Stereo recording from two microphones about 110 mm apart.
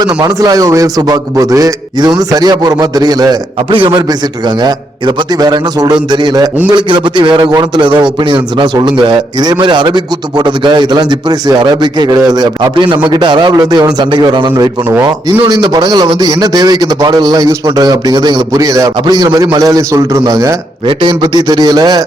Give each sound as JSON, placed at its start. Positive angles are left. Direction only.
{"t": 0.0, "sound": "a man's voice", "side_deg": -35}
{"t": 3.7, "sound": "a man's voice", "side_deg": -50}
{"t": 4.4, "sound": "a man's voice", "side_deg": -40}
{"t": 20.8, "sound": "a man's voice", "side_deg": -45}